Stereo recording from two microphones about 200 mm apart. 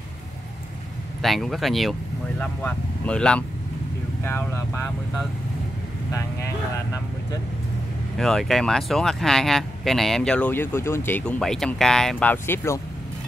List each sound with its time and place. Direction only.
1.2 s speech: centre (ahead or behind)
6.1 s speech: 15° left (ahead or behind)
8.2 s speech: centre (ahead or behind)